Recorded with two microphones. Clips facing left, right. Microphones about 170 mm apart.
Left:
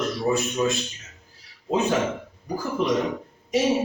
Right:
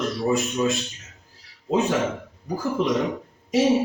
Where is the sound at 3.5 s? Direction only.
Centre (ahead or behind).